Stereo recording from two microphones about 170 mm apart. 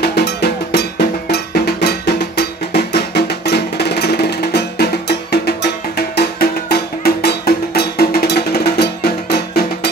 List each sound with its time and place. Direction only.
0.0 s music: 75° left (ahead or behind)